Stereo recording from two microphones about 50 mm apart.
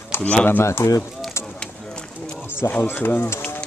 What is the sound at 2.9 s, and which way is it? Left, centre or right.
Speech, left.